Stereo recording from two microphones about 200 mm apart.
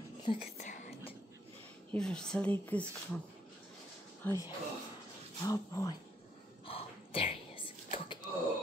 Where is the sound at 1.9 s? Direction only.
5° left (ahead or behind).